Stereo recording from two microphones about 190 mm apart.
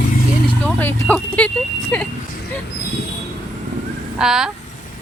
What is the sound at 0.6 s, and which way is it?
Speech, 10° left (ahead or behind).